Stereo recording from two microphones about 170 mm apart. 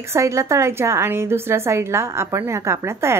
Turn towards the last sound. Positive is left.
turn(degrees=-15)  # may be behind; listen again after turning